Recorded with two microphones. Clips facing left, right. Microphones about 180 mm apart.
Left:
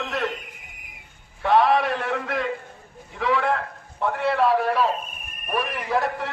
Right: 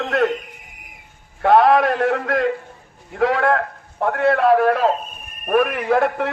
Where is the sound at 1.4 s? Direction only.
50° right (ahead or behind).